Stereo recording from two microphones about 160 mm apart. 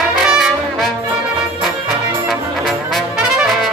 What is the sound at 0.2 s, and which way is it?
Brass instrument, centre (ahead or behind).